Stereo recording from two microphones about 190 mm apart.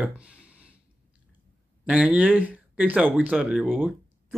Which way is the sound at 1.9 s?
5° right (ahead or behind).